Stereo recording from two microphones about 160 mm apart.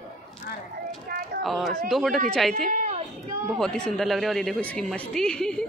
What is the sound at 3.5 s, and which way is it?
Speech, 5° left (ahead or behind).